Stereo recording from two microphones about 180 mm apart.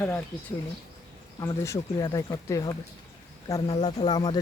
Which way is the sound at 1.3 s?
15° left (ahead or behind).